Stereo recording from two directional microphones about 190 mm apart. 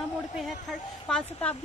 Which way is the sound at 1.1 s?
5° left (ahead or behind).